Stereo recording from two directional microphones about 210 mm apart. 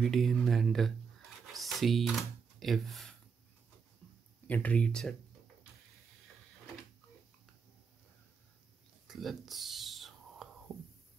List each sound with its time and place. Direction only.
0.0 s speech: centre (ahead or behind)
4.5 s speech: 5° left (ahead or behind)
9.0 s whispering: centre (ahead or behind)